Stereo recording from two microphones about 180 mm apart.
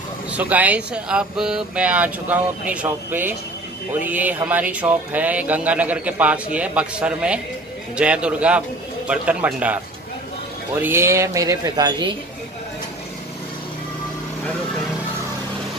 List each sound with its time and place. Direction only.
0.4 s speech: 10° right (ahead or behind); by 12.2 s 25° right (ahead or behind)